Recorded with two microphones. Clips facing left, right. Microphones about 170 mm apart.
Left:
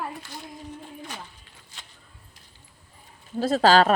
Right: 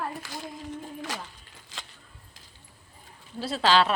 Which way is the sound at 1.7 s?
90° right.